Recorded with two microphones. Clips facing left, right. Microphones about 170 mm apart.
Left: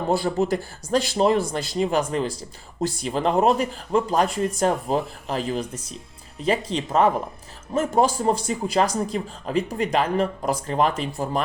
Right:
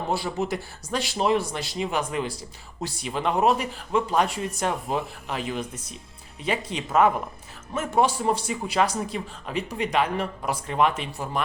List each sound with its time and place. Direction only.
0.3 s a man's voice: 35° left (ahead or behind)